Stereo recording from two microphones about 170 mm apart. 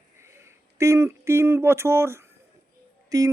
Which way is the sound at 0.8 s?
15° right (ahead or behind).